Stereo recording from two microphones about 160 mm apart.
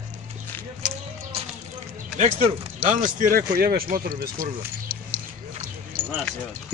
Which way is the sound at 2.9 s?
55° right (ahead or behind).